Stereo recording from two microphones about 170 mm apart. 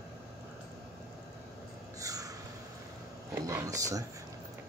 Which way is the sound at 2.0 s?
20° right (ahead or behind).